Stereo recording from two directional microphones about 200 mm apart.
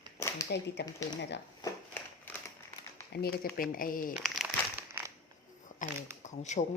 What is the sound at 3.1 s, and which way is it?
Speech, 55° left (ahead or behind).